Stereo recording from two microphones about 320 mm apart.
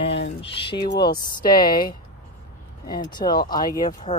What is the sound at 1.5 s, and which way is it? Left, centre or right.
Speech, left.